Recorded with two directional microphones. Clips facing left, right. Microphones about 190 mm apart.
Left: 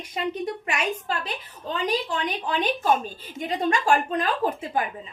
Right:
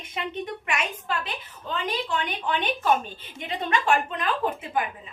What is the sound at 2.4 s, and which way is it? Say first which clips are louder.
Speech: left 1 dB; 35° left (ahead or behind).